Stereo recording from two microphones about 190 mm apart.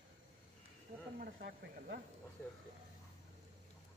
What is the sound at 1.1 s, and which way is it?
Speech, 55° right (ahead or behind).